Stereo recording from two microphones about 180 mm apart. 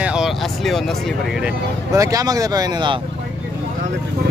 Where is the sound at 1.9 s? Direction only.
20° right (ahead or behind).